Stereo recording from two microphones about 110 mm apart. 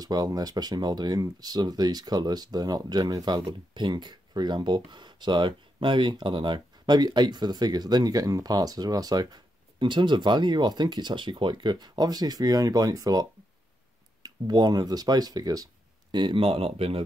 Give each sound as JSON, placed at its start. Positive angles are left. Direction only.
{"t": 0.0, "sound": "speech", "side_deg": -35}